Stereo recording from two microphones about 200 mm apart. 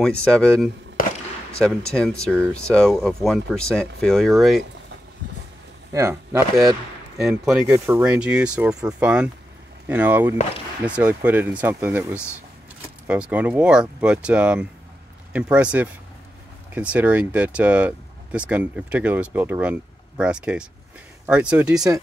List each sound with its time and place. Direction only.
0.0 s speech: 5° left (ahead or behind)
1.0 s a sound: 45° left (ahead or behind)
1.9 s speech: 5° left (ahead or behind)
5.9 s speech: 15° right (ahead or behind)
7.2 s speech: centre (ahead or behind)